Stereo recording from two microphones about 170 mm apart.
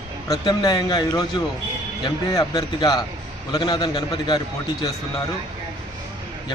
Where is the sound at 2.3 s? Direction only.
20° left (ahead or behind).